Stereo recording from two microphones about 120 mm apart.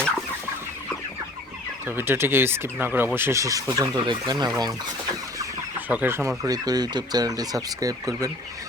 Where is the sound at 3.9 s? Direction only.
40° right (ahead or behind).